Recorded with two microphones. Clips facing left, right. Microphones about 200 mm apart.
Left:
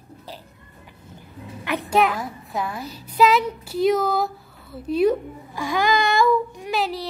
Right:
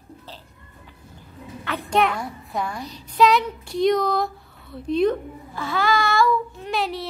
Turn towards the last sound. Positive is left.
turn(degrees=0)  # may be behind; listen again after turning